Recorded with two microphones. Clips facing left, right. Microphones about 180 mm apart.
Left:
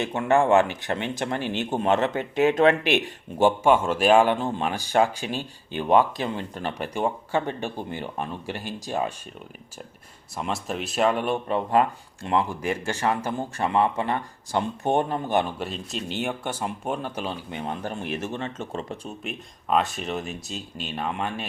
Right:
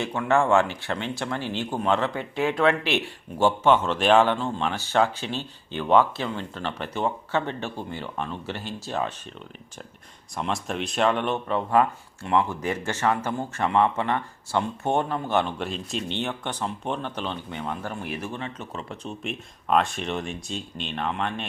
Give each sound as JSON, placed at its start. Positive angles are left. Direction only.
{"t": 0.0, "sound": "speech", "side_deg": 20}
{"t": 10.3, "sound": "speech", "side_deg": 5}
{"t": 11.4, "sound": "speech", "side_deg": 20}
{"t": 12.6, "sound": "speech", "side_deg": 10}
{"t": 13.6, "sound": "speech", "side_deg": 35}
{"t": 14.5, "sound": "speech", "side_deg": 15}
{"t": 15.5, "sound": "speech", "side_deg": 0}
{"t": 17.7, "sound": "speech", "side_deg": 25}
{"t": 18.3, "sound": "speech", "side_deg": 45}
{"t": 19.0, "sound": "speech", "side_deg": 0}